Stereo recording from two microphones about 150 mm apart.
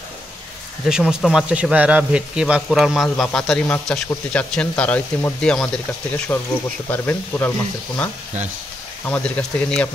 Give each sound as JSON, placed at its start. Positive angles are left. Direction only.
{"t": 0.8, "sound": "speech", "side_deg": -5}